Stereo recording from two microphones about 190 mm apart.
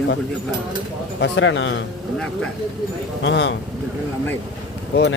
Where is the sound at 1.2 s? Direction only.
80° left.